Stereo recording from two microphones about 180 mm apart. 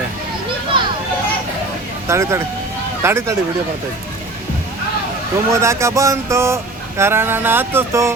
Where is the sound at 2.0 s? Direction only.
15° right (ahead or behind).